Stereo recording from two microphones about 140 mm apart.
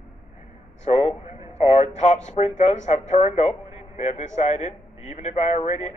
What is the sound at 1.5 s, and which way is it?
A man's voice, 50° left (ahead or behind).